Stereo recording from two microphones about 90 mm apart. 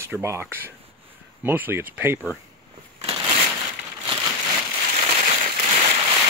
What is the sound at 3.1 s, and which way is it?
Crushing, 65° right (ahead or behind).